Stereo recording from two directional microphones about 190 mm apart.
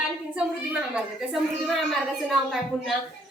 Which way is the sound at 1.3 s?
Centre (ahead or behind).